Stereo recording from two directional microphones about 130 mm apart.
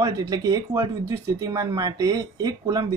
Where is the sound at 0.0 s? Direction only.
25° right (ahead or behind).